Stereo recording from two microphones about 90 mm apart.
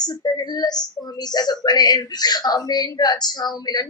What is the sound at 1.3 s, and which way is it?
Speech, 50° left (ahead or behind).